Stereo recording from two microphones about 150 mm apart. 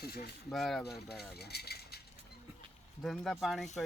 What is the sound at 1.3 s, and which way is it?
Mechanisms, 90° left.